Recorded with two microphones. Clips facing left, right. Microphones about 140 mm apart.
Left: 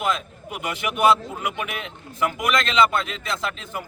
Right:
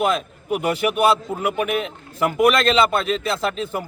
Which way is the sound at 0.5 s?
40° right (ahead or behind).